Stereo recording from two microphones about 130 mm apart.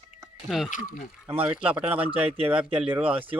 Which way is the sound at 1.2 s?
15° right (ahead or behind).